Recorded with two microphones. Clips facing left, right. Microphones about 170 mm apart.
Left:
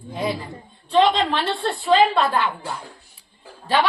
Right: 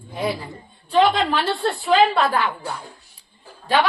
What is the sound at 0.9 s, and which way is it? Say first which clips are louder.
A woman's voice: even; 5° right (ahead or behind).